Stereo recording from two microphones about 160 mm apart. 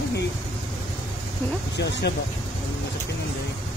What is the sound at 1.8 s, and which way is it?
Speech, 90° left.